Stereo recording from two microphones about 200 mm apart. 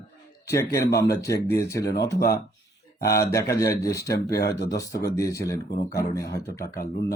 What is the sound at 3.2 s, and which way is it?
A man's voice, 15° left (ahead or behind).